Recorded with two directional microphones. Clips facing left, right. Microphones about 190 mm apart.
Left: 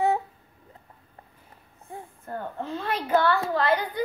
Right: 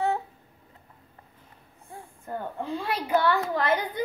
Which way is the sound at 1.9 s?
20° left (ahead or behind).